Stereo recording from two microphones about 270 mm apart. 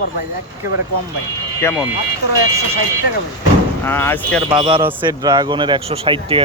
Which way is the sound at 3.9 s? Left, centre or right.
Centre.